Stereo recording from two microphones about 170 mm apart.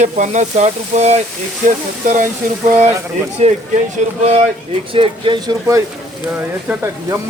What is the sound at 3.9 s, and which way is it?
Speech, 40° right (ahead or behind).